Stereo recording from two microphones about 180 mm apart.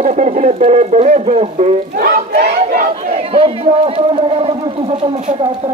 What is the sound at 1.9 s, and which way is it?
Crowd, 50° right (ahead or behind).